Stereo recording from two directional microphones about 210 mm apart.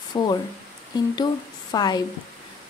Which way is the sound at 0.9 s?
20° left (ahead or behind).